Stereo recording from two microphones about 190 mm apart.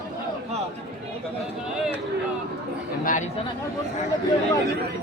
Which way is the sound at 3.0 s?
45° left (ahead or behind).